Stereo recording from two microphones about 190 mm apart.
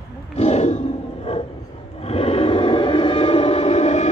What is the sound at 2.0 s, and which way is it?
Train, 30° left (ahead or behind).